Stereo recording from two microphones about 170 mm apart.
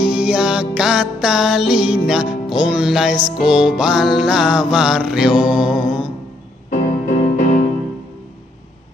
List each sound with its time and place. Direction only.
0.0 s music: 5° right (ahead or behind)
6.7 s music: 45° left (ahead or behind)